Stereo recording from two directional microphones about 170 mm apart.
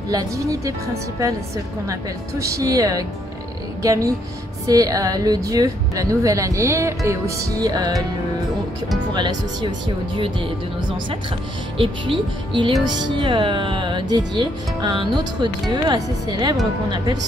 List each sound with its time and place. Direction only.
0.1 s a woman's voice: 20° right (ahead or behind)
1.9 s a woman's voice: 20° right (ahead or behind)
9.1 s a woman's voice: 25° right (ahead or behind)